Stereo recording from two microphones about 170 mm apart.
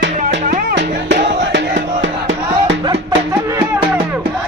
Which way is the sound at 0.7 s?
90° right.